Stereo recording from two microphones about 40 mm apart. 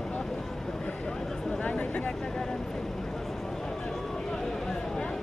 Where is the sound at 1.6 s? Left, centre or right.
Left.